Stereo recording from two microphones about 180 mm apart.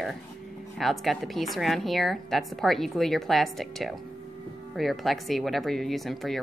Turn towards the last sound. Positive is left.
turn(degrees=0)  # may be behind; listen again after turning